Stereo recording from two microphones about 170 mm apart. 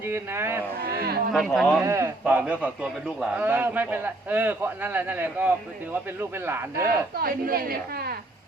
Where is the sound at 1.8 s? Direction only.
15° right (ahead or behind).